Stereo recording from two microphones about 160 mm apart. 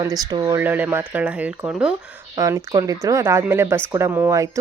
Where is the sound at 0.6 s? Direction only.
10° right (ahead or behind).